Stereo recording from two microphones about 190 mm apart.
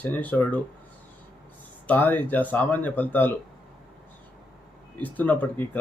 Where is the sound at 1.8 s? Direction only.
10° left (ahead or behind).